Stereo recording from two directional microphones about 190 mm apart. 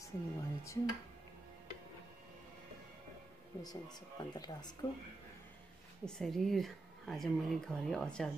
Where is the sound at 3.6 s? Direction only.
20° left (ahead or behind).